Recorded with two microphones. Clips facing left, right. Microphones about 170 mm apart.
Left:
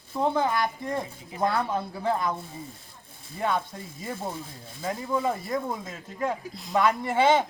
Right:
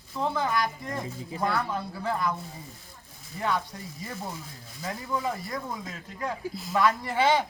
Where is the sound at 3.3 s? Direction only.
25° left (ahead or behind).